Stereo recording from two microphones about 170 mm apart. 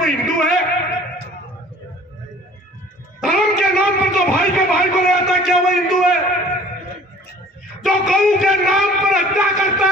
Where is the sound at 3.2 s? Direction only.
5° left (ahead or behind).